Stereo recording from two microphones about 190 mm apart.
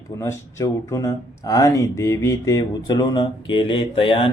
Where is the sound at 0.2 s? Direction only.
15° left (ahead or behind).